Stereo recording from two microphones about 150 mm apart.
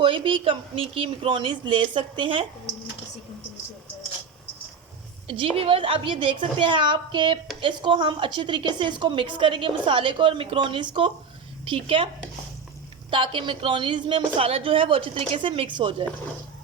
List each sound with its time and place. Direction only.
0.0 s a woman's voice: 35° right (ahead or behind)
5.3 s a woman's voice: 35° right (ahead or behind)
13.1 s a woman's voice: 35° right (ahead or behind)